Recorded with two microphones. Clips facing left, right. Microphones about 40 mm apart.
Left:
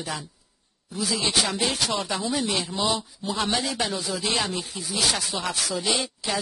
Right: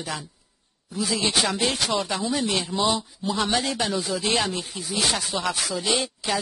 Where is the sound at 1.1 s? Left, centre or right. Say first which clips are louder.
Right 1 dB; centre.